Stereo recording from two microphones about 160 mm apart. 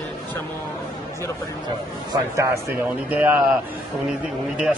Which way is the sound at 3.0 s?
10° right (ahead or behind).